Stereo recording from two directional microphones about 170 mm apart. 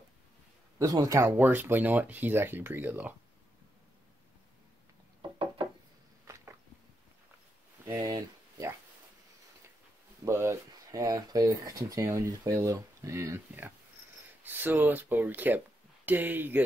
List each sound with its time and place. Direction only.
0.7 s speech: 20° right (ahead or behind)
7.8 s a sound: 25° right (ahead or behind)
10.2 s speech: 15° right (ahead or behind)